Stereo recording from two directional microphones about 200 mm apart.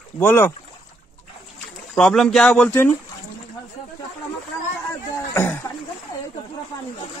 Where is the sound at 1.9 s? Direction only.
Centre (ahead or behind).